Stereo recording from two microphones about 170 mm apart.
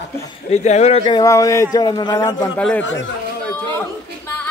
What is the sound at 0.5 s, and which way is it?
Speech, 40° left (ahead or behind).